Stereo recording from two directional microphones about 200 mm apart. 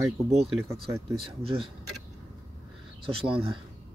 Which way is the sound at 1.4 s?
30° right (ahead or behind).